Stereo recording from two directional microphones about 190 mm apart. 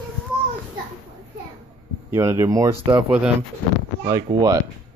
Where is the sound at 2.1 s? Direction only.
15° right (ahead or behind).